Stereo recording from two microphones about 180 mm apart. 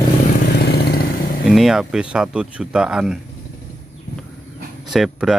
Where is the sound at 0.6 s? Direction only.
60° left (ahead or behind).